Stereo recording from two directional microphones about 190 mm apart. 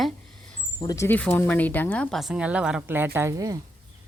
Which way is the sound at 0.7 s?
15° left (ahead or behind).